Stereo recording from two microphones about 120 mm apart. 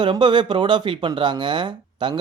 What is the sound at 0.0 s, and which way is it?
Speech, 45° right (ahead or behind).